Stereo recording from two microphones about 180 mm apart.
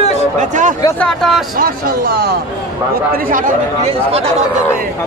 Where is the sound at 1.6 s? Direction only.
55° right (ahead or behind).